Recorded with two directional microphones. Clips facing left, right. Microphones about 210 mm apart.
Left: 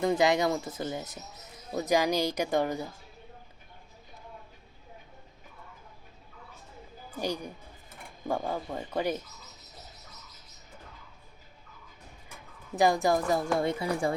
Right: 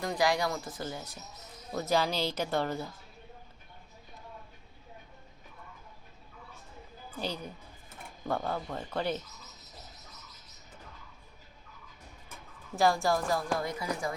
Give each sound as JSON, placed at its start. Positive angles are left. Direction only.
{"t": 0.0, "sound": "a woman's voice", "side_deg": 25}
{"t": 7.2, "sound": "speech", "side_deg": 15}
{"t": 12.7, "sound": "a woman's voice", "side_deg": 20}